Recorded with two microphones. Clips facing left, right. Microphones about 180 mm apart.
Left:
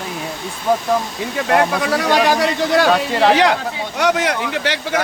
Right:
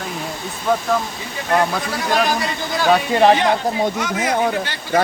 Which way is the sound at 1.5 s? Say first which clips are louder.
Left 2 dB; 75° left (ahead or behind).